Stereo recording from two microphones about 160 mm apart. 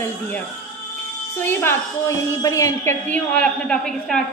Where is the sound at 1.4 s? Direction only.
15° left (ahead or behind).